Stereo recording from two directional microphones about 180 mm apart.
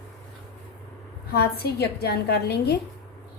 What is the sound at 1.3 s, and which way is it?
A woman's voice, 60° left (ahead or behind).